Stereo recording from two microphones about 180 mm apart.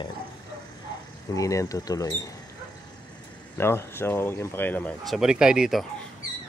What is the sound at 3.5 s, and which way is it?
Speech, 15° left (ahead or behind).